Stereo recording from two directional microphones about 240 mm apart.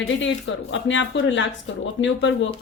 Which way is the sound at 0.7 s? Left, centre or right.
Left.